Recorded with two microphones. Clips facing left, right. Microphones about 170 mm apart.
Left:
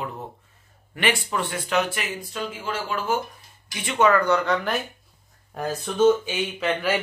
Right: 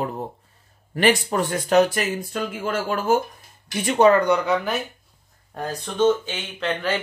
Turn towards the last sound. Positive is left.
turn(degrees=10)  # may be behind; listen again after turning